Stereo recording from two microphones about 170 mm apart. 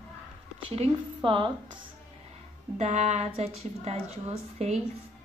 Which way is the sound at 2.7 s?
40° right (ahead or behind).